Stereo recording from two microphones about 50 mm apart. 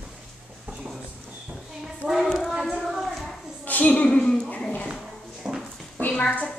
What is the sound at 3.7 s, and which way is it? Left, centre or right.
Speech, left.